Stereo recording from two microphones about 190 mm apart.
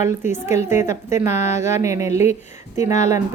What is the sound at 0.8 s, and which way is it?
Speech, 15° right (ahead or behind).